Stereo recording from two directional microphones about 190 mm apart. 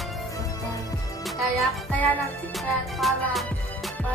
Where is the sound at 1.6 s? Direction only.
5° left (ahead or behind).